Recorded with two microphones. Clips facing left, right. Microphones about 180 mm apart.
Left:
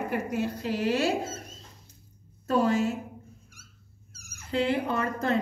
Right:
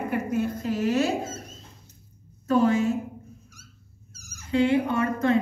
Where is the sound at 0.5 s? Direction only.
35° left (ahead or behind).